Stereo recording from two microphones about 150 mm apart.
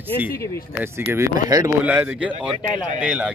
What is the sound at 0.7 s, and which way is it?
Speech, 20° right (ahead or behind).